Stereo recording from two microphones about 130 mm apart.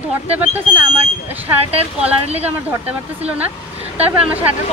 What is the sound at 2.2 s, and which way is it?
Speech, 55° right (ahead or behind).